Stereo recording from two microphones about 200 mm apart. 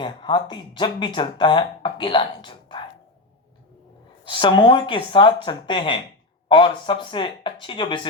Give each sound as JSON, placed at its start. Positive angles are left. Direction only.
{"t": 0.0, "sound": "speech", "side_deg": 25}
{"t": 4.3, "sound": "speech", "side_deg": 25}